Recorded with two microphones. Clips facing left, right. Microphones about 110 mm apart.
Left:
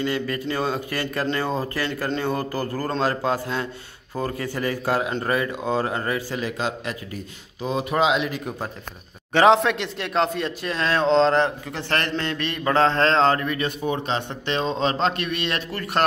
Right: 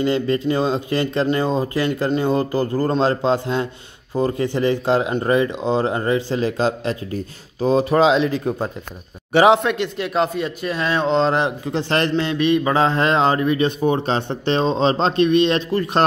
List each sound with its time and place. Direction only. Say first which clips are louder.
0.0 s mantra: right 6 dB; 25° right (ahead or behind)
7.6 s speech: right 7 dB; 35° right (ahead or behind)
9.3 s a man's voice: right 2 dB; 10° right (ahead or behind)
9.6 s speech: right 3 dB; centre (ahead or behind)
11.7 s mantra: right 6 dB; 20° right (ahead or behind)